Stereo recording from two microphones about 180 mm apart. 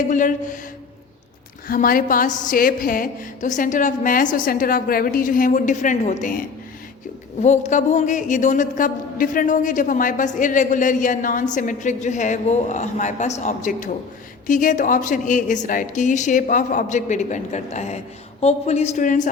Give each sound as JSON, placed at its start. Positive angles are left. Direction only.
{"t": 0.1, "sound": "a man's voice", "side_deg": 45}
{"t": 1.6, "sound": "a man's voice", "side_deg": 50}
{"t": 7.4, "sound": "a man's voice", "side_deg": 40}